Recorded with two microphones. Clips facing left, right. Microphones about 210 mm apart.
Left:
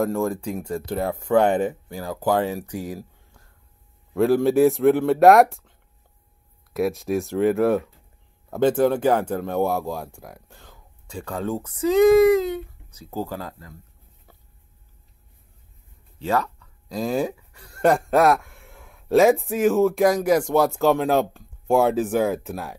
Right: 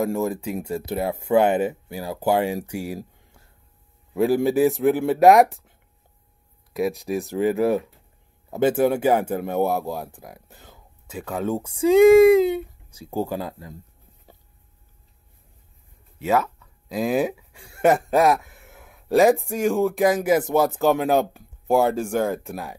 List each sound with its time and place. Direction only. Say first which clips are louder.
0.0 s a man's voice: even; 5° right (ahead or behind)
4.2 s a man's voice: left 2 dB; centre (ahead or behind)
6.7 s a man's voice: left 1 dB; centre (ahead or behind); by 13.7 s 15° right (ahead or behind)
16.2 s a sound: right 2 dB; 5° right (ahead or behind)
17.6 s a man's voice: right 1 dB; 5° right (ahead or behind)